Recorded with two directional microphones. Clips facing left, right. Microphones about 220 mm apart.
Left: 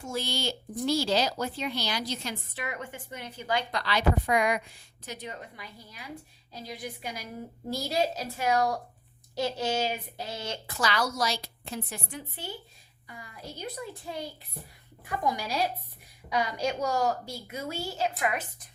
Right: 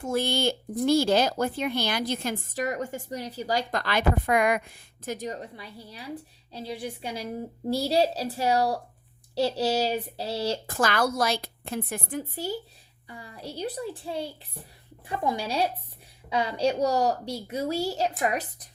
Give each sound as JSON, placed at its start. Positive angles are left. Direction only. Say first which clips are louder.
{"t": 0.0, "sound": "a woman's voice", "louder": "right 7 dB", "side_deg": -55}
{"t": 10.7, "sound": "a woman's voice", "louder": "right 2 dB", "side_deg": -50}